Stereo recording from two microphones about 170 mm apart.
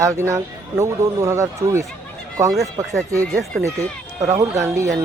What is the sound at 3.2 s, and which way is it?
Speech, 5° left (ahead or behind).